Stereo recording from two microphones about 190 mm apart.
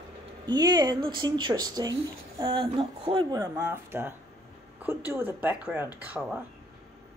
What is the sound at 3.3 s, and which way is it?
Speech, 15° right (ahead or behind).